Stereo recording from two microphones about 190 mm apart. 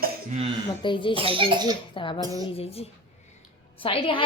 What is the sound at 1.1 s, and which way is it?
Speech, 30° right (ahead or behind).